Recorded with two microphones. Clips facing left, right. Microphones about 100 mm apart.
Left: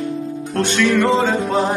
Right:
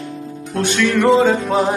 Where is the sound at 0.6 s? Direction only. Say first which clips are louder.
Even; centre (ahead or behind).